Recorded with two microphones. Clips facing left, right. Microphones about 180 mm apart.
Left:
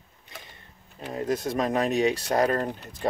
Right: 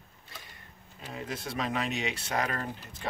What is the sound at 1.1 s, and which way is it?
Speech, 45° left (ahead or behind).